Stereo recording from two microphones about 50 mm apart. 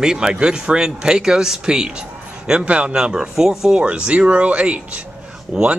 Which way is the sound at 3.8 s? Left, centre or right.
Right.